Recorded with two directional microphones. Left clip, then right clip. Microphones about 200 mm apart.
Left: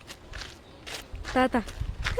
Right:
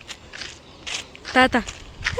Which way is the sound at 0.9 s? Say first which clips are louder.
Right 9 dB; 30° left (ahead or behind).